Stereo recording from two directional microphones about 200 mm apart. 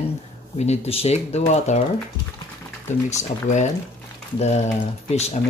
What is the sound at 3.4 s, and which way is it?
Speech, 35° left (ahead or behind).